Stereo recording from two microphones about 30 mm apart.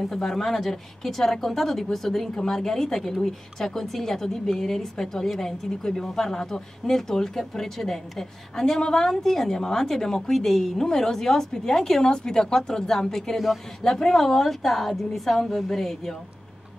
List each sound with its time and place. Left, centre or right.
0.1 s speech: centre
10.3 s speech: centre
12.0 s a woman's voice: left